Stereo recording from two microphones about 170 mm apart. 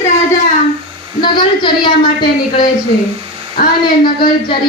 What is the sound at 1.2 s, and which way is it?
Speech, 25° left (ahead or behind).